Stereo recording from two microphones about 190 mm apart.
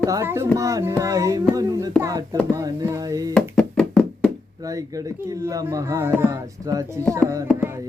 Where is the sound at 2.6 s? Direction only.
20° right (ahead or behind).